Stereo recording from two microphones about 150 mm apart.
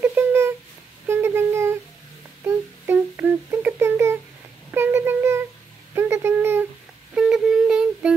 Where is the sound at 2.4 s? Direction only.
15° right (ahead or behind).